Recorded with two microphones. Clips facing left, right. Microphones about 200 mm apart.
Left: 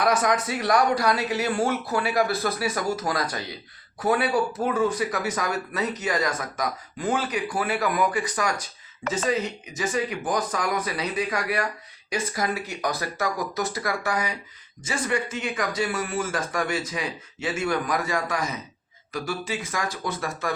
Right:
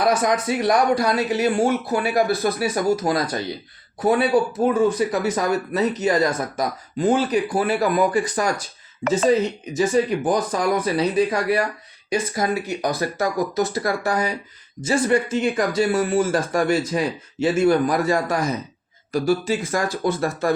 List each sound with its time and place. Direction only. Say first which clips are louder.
0.0 s speech: right 3 dB; 25° right (ahead or behind)
9.7 s speech: right 8 dB; 30° right (ahead or behind)
14.1 s speech: right 5 dB; 40° right (ahead or behind)